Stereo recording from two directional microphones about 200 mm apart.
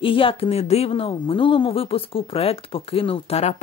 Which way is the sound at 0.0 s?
25° left (ahead or behind).